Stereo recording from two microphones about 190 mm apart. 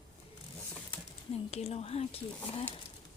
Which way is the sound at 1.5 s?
35° left (ahead or behind).